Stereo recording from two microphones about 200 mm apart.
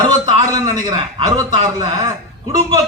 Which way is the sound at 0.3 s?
20° right (ahead or behind).